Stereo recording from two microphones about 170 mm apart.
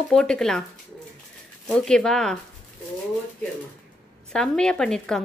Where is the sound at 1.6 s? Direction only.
5° left (ahead or behind).